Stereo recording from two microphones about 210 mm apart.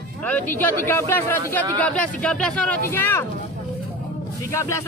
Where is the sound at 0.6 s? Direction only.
10° left (ahead or behind).